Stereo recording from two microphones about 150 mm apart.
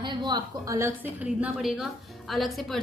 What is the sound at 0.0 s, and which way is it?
Speech, 30° right (ahead or behind).